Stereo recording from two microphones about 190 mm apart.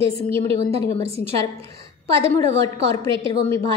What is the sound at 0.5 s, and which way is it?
Speech, 30° right (ahead or behind).